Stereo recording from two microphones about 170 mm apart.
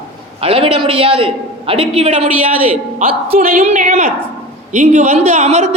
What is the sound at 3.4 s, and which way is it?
A man's voice, 45° right (ahead or behind).